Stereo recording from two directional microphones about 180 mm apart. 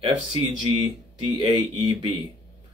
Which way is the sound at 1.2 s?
25° right (ahead or behind).